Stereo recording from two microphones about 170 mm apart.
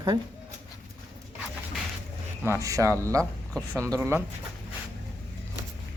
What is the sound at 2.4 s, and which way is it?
Speech, 15° right (ahead or behind).